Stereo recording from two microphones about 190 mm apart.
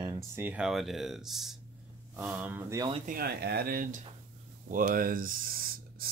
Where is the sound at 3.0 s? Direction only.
50° right (ahead or behind).